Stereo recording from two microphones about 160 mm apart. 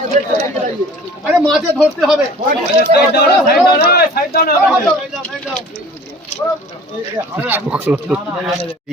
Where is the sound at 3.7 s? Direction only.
75° left (ahead or behind).